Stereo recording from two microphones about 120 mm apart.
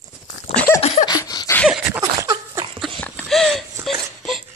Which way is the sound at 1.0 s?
35° left (ahead or behind).